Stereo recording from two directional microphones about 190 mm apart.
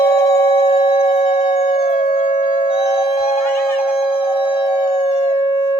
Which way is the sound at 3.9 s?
30° left (ahead or behind).